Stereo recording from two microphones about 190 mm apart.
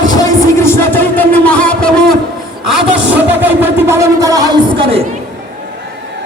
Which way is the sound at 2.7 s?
5° right (ahead or behind).